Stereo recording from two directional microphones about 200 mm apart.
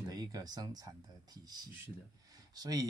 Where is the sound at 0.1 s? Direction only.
20° right (ahead or behind).